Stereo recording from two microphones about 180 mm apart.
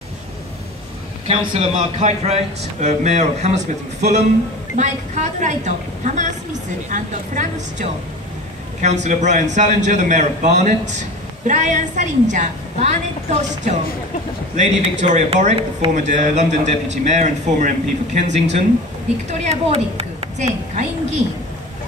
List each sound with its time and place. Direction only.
1.2 s a man's voice: 35° right (ahead or behind)